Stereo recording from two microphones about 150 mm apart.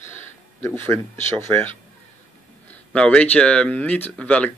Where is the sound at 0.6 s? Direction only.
15° left (ahead or behind).